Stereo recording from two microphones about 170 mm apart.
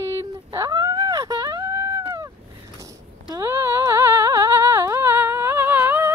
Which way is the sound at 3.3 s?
15° right (ahead or behind).